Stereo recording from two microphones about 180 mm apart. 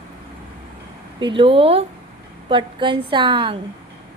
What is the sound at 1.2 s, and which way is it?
A woman's voice, 30° right (ahead or behind).